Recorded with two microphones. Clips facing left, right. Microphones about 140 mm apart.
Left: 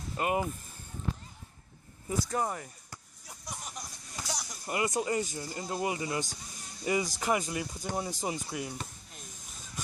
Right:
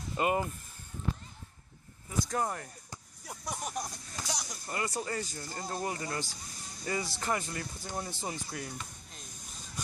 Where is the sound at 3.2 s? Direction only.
55° right (ahead or behind).